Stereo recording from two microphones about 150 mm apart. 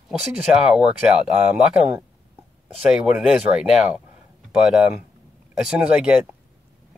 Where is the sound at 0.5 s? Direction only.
5° right (ahead or behind).